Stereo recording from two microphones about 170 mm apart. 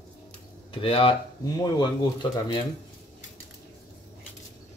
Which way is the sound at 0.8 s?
35° left (ahead or behind).